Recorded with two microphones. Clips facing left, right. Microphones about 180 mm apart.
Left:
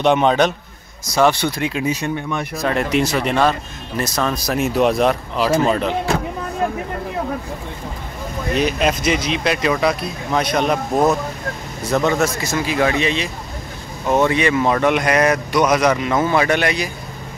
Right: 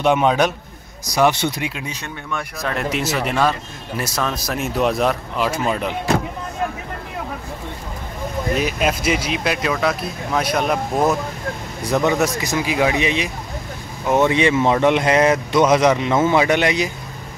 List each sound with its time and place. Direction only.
0.0 s speech: 5° right (ahead or behind)
1.1 s speech: 15° right (ahead or behind)
1.7 s speech: 5° left (ahead or behind)
8.5 s speech: 5° right (ahead or behind)